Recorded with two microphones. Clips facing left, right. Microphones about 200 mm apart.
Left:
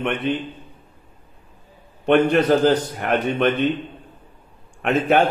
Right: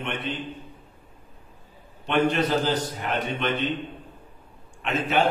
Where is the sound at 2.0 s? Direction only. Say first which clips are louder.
Left 7 dB; 60° left (ahead or behind).